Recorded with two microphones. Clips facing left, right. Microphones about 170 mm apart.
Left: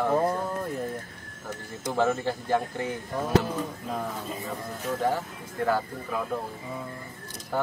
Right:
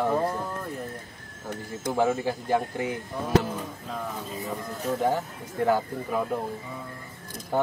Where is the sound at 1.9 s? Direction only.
10° right (ahead or behind).